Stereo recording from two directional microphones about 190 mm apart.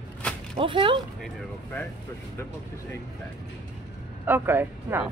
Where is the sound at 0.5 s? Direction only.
25° right (ahead or behind).